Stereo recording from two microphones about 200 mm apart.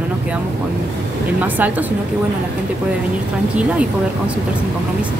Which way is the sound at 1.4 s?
10° right (ahead or behind).